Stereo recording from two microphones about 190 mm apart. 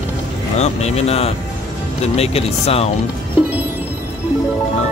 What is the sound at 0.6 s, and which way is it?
Speech, 35° left (ahead or behind).